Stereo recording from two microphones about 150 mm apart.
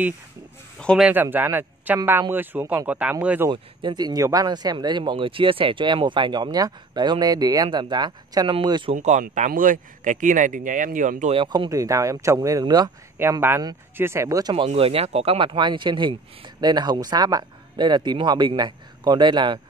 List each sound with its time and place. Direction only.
0.7 s a sound: 5° left (ahead or behind)
1.0 s speech: 10° right (ahead or behind)
3.4 s speech: 30° right (ahead or behind)
8.9 s speech: 55° right (ahead or behind)
11.3 s speech: 30° right (ahead or behind)
13.2 s speech: 15° right (ahead or behind)
14.7 s speech: 40° right (ahead or behind)